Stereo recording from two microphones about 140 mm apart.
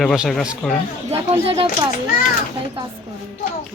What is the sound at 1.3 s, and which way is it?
Speech, 35° right (ahead or behind).